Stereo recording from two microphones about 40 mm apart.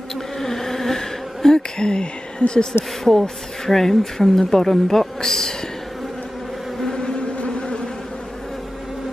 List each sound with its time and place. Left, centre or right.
0.4 s insect: centre
3.0 s speech: centre
6.8 s insect: centre